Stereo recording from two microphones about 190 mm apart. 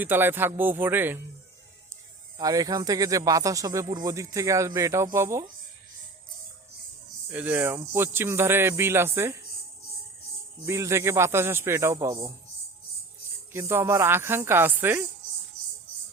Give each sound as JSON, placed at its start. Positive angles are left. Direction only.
{"t": 0.0, "sound": "speech", "side_deg": -10}
{"t": 2.4, "sound": "speech", "side_deg": -20}
{"t": 7.3, "sound": "speech", "side_deg": -10}
{"t": 10.7, "sound": "speech", "side_deg": -15}
{"t": 13.5, "sound": "speech", "side_deg": -10}